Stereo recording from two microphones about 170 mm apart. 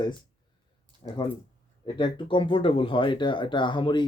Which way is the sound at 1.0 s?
30° left (ahead or behind).